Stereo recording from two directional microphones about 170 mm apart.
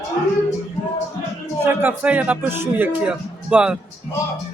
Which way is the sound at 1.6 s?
15° right (ahead or behind).